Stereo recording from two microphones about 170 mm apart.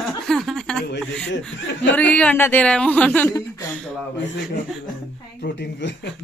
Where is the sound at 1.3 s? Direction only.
90° left.